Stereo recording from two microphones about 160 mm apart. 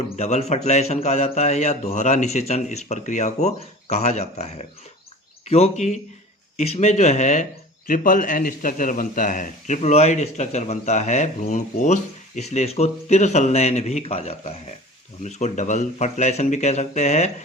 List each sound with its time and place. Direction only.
0.0 s a man's voice: 40° left (ahead or behind)
7.9 s a man's voice: 60° left (ahead or behind)